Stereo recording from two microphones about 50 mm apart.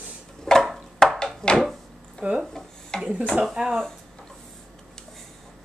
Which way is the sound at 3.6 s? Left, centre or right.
Centre.